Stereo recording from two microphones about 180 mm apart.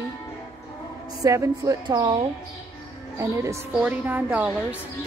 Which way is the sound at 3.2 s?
15° right (ahead or behind).